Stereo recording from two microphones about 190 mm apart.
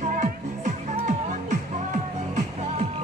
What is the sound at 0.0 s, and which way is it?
Music, 40° right (ahead or behind).